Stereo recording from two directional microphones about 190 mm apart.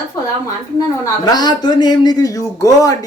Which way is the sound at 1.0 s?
20° left (ahead or behind).